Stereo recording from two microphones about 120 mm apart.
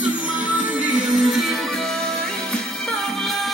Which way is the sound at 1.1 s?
Centre (ahead or behind).